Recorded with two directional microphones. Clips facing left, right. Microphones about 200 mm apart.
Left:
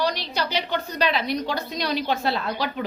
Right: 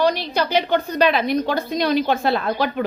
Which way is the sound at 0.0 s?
50° right (ahead or behind).